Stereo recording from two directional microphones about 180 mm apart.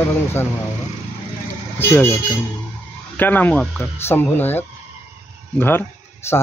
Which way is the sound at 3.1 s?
10° left (ahead or behind).